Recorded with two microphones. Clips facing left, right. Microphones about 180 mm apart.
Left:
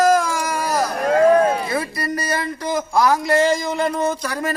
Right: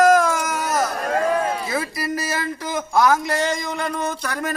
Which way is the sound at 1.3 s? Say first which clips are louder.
Left 9 dB; 45° left (ahead or behind).